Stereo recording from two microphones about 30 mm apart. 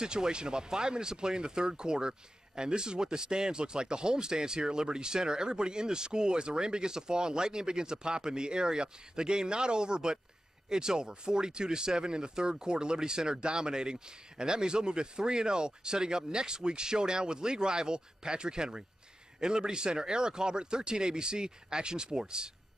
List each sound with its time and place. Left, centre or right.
0.0 s speech: right